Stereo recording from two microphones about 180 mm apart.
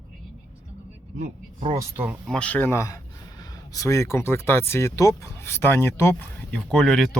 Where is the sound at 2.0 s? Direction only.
5° right (ahead or behind).